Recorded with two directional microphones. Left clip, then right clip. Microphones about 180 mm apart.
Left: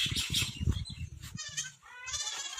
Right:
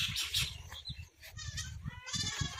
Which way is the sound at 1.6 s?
Centre (ahead or behind).